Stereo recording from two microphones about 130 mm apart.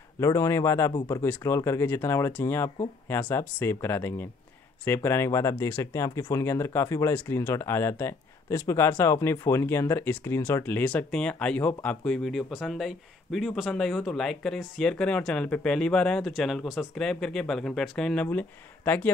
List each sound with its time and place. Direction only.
0.2 s speech: 25° left (ahead or behind)